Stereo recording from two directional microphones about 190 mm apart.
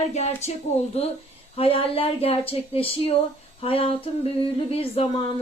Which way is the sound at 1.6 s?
30° left (ahead or behind).